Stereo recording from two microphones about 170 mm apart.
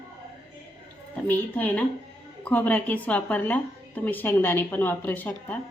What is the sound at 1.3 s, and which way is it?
A woman's voice, 10° left (ahead or behind).